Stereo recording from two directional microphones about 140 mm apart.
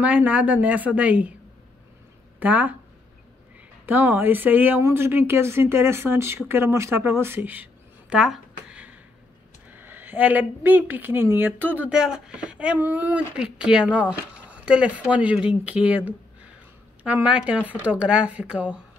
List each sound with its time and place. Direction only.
0.0 s a woman's voice: 10° right (ahead or behind)
2.4 s a woman's voice: 10° right (ahead or behind)
3.8 s a woman's voice: 15° right (ahead or behind)
17.0 s a woman's voice: 10° right (ahead or behind)